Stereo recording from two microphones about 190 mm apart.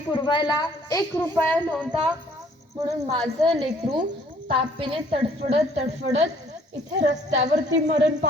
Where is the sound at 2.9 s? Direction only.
20° right (ahead or behind).